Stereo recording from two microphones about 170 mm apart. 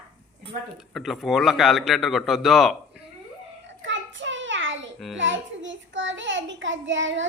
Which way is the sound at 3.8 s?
90° right.